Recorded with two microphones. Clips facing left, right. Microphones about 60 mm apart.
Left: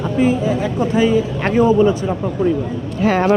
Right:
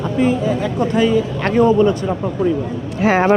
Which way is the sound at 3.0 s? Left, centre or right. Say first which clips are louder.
Right 1 dB; right.